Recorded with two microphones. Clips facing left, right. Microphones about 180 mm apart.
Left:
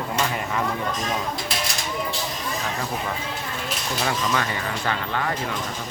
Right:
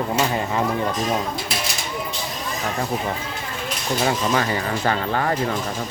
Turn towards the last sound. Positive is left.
turn(degrees=-40)  # may be behind; listen again after turning